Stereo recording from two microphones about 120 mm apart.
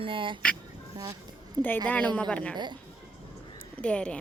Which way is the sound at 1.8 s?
15° left (ahead or behind).